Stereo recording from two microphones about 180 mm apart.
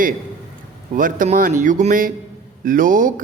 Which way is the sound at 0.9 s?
45° right (ahead or behind).